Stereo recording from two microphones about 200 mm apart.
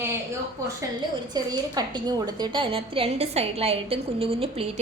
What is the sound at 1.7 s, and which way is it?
A woman's voice, 20° right (ahead or behind).